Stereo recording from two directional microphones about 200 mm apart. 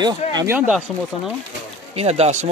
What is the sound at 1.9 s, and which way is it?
Speech, 30° right (ahead or behind).